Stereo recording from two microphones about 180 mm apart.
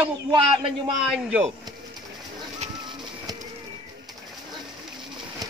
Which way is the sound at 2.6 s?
25° right (ahead or behind).